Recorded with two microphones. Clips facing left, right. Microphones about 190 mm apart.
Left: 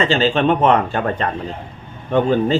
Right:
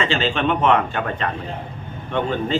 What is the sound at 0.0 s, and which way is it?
A man's voice, 35° left (ahead or behind).